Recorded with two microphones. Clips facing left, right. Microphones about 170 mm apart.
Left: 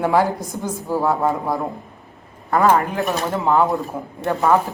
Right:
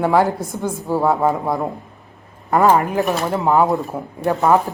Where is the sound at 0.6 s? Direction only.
15° right (ahead or behind).